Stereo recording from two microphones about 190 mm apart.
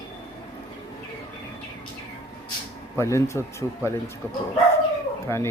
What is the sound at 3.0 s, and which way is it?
Speech, 15° left (ahead or behind).